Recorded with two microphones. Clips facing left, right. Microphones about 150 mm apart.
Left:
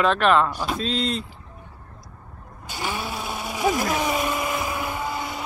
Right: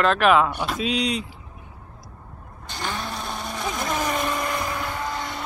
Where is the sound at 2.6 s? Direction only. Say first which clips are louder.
Left 1 dB; 10° left (ahead or behind).